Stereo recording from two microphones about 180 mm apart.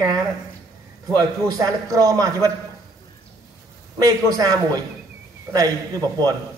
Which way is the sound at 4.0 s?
20° right (ahead or behind).